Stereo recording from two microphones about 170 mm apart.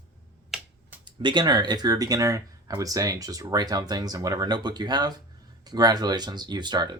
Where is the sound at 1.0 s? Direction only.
25° right (ahead or behind).